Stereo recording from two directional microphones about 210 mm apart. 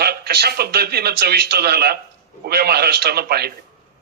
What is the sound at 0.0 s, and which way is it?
A man's voice, 50° right (ahead or behind).